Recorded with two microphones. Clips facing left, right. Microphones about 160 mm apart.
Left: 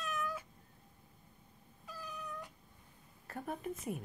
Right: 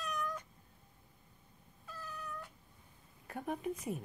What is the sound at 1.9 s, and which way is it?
Cat, 15° left (ahead or behind).